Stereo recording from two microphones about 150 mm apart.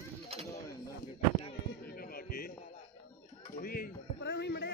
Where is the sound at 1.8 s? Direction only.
80° left.